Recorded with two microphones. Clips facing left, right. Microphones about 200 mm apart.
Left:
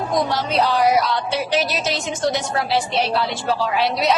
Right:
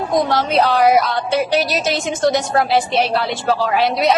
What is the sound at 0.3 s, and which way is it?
Speech, 60° right (ahead or behind).